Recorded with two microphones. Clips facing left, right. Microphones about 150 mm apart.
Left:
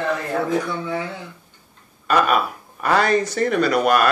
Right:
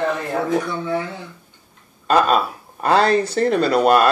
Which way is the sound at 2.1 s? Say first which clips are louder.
Right 2 dB; 30° right (ahead or behind).